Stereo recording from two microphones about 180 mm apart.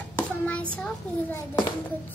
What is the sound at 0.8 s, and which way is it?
Speech, 10° left (ahead or behind).